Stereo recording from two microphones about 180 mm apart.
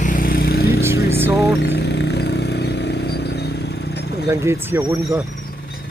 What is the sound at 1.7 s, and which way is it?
Vehicle, 70° left (ahead or behind).